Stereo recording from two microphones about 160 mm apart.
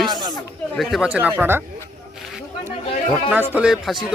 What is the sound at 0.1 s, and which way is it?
Chatter, 25° right (ahead or behind).